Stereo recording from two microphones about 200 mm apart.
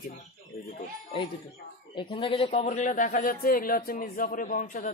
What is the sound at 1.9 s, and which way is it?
A man's voice, 25° left (ahead or behind).